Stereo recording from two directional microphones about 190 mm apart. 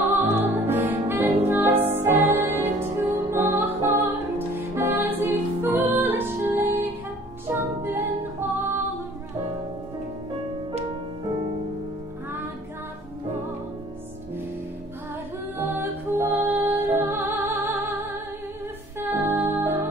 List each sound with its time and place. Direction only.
0.0 s music: 10° right (ahead or behind)
15.5 s music: 10° right (ahead or behind)
18.9 s music: 10° right (ahead or behind)